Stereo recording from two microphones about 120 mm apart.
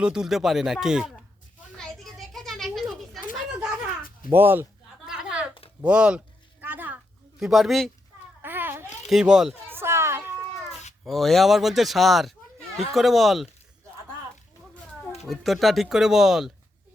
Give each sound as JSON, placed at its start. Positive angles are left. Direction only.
{"t": 0.0, "sound": "speech", "side_deg": -5}
{"t": 1.8, "sound": "a sound", "side_deg": 0}
{"t": 4.3, "sound": "speech", "side_deg": -15}
{"t": 5.0, "sound": "a sound", "side_deg": -5}
{"t": 7.3, "sound": "speech", "side_deg": -5}
{"t": 8.4, "sound": "babbling", "side_deg": -15}
{"t": 9.0, "sound": "speech", "side_deg": -5}
{"t": 9.6, "sound": "a sound", "side_deg": -20}
{"t": 11.0, "sound": "speech", "side_deg": 0}
{"t": 15.2, "sound": "speech", "side_deg": 0}